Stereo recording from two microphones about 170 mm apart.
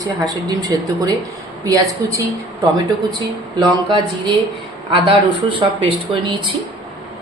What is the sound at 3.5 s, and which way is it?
A woman's voice, 25° right (ahead or behind).